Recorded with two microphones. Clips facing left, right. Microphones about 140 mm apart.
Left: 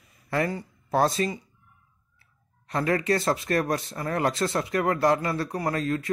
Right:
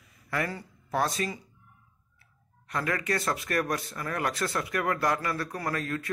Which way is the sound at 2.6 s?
30° left (ahead or behind).